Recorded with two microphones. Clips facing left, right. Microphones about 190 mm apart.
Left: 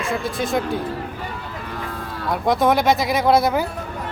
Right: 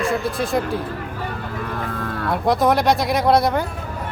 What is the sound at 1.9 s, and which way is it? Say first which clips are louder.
Cattle: right 4 dB; 55° right (ahead or behind).